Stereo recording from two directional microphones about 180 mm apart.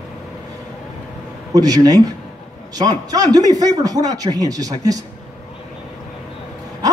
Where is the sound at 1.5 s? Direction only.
20° right (ahead or behind).